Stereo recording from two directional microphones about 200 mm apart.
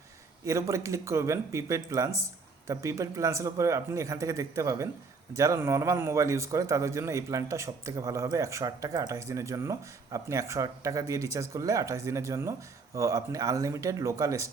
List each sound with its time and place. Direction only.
0.4 s a man's voice: 15° right (ahead or behind)